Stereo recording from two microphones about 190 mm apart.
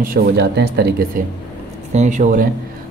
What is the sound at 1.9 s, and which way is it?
Speech, 40° right (ahead or behind).